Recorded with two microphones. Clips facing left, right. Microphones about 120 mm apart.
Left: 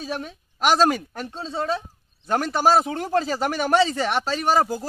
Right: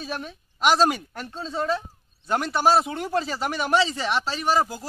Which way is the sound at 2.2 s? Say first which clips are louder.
Left 1 dB; 45° left (ahead or behind).